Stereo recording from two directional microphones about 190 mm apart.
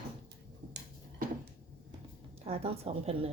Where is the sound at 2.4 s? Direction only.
30° right (ahead or behind).